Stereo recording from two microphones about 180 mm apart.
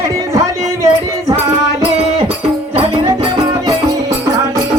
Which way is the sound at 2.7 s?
25° right (ahead or behind).